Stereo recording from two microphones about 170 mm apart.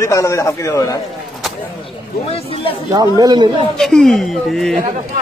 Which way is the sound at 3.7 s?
5° left (ahead or behind).